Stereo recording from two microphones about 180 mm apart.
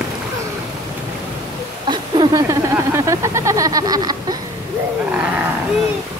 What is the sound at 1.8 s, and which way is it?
Speech, 25° right (ahead or behind).